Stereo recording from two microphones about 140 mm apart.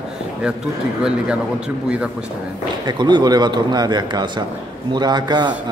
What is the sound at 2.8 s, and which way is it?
A man's voice, 30° right (ahead or behind).